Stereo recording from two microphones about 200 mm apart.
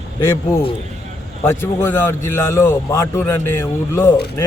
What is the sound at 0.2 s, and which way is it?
A man's voice, 10° left (ahead or behind).